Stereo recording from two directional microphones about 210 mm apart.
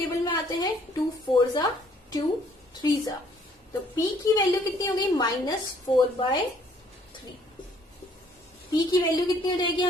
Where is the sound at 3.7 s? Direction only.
15° left (ahead or behind).